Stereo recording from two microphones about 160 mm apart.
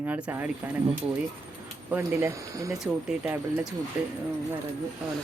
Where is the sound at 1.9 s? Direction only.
15° right (ahead or behind).